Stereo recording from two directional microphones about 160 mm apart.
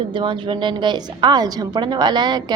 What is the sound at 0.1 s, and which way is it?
A woman's voice, 30° right (ahead or behind).